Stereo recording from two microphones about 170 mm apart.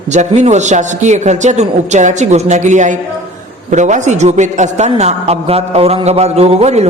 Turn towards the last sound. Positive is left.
turn(degrees=-40)  # may be behind; listen again after turning